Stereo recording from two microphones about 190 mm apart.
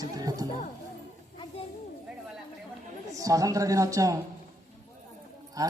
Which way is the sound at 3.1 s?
15° right (ahead or behind).